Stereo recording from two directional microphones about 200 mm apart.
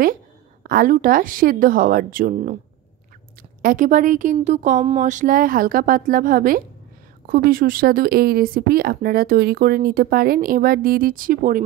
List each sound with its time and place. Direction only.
0.7 s speech: 45° right (ahead or behind)
3.6 s speech: 40° right (ahead or behind)